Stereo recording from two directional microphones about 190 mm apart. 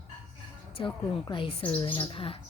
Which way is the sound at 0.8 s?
25° left (ahead or behind).